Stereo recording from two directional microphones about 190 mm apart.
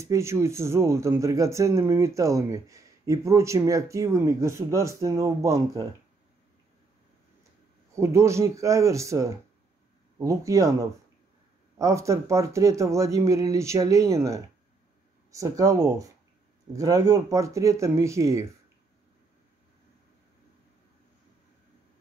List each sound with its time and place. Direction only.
0.0 s speech: 15° right (ahead or behind)
7.9 s speech: 15° right (ahead or behind)
11.8 s speech: 15° right (ahead or behind)